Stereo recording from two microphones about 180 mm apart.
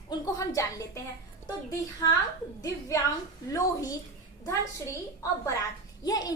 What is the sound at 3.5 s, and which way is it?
Speech, 20° left (ahead or behind).